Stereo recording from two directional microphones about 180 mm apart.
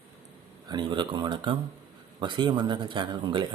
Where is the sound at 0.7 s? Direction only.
25° right (ahead or behind).